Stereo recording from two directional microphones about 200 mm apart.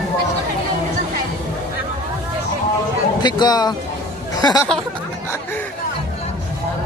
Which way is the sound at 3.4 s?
20° left (ahead or behind).